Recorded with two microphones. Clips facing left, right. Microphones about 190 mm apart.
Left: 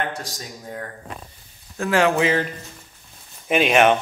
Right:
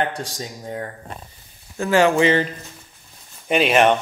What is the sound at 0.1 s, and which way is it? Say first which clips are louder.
Speech: right 3 dB; 30° right (ahead or behind).